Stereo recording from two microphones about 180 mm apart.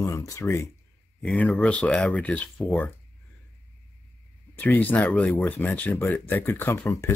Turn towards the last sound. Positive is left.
turn(degrees=15)  # may be behind; listen again after turning